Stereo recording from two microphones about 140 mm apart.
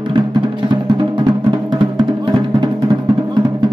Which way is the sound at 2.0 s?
35° right (ahead or behind).